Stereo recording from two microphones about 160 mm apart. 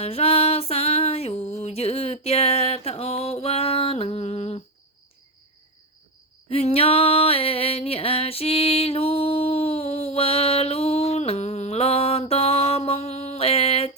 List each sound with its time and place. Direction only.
0.0 s music: 40° left (ahead or behind)
6.5 s music: 40° left (ahead or behind)